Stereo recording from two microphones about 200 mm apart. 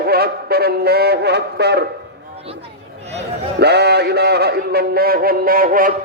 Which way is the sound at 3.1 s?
35° right (ahead or behind).